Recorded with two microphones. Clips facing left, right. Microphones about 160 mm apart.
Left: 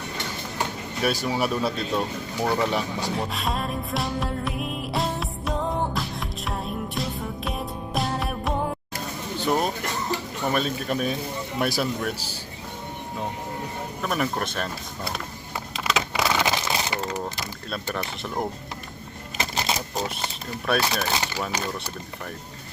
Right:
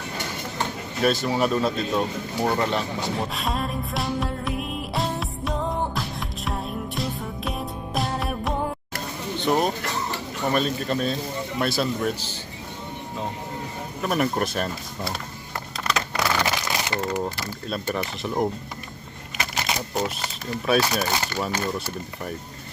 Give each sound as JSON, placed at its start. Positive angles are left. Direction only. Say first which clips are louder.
{"t": 1.0, "sound": "speech", "louder": "right 3 dB", "side_deg": 10}
{"t": 1.9, "sound": "speech", "louder": "right 2 dB", "side_deg": -10}
{"t": 2.6, "sound": "music", "louder": "even", "side_deg": 5}
{"t": 9.4, "sound": "speech", "louder": "right 2 dB", "side_deg": 0}
{"t": 14.0, "sound": "speech", "louder": "right 3 dB", "side_deg": -5}
{"t": 16.1, "sound": "a sound", "louder": "even", "side_deg": 15}
{"t": 17.7, "sound": "speech", "louder": "right 3 dB", "side_deg": 0}
{"t": 19.4, "sound": "a sound", "louder": "left 1 dB", "side_deg": 30}
{"t": 19.9, "sound": "speech", "louder": "right 2 dB", "side_deg": -5}